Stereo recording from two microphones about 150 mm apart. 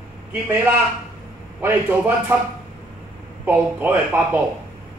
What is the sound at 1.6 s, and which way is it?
Speech, 10° right (ahead or behind).